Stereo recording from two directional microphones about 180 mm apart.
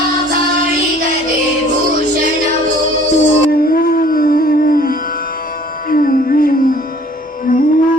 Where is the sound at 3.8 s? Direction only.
50° left (ahead or behind).